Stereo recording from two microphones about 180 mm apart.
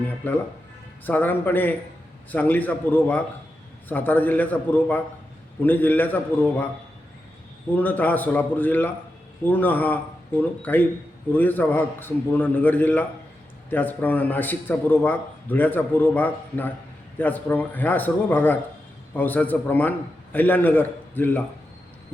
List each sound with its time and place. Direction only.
0.2 s a man's voice: 10° left (ahead or behind)
7.7 s a man's voice: 10° left (ahead or behind)